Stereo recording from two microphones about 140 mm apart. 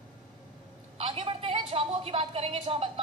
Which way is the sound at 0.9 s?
40° right (ahead or behind).